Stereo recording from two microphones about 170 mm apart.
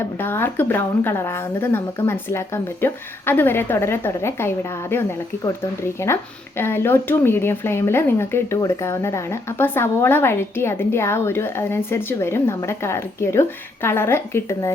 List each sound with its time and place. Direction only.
0.0 s speech: 15° left (ahead or behind)